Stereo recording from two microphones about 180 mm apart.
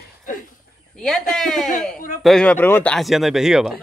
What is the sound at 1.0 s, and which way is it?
Speech, centre (ahead or behind).